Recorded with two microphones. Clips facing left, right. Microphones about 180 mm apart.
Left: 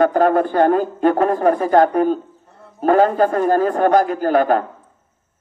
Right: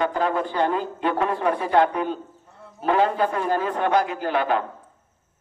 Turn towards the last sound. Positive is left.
turn(degrees=45)  # may be behind; listen again after turning